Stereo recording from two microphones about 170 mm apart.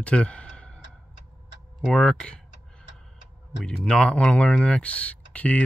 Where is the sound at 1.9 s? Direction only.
5° left (ahead or behind).